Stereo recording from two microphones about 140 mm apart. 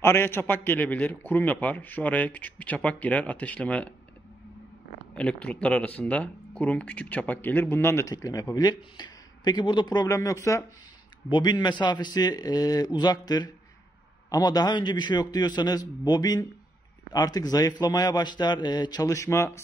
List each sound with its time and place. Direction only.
0.0 s speech: 15° left (ahead or behind)
5.1 s a man's voice: 10° left (ahead or behind)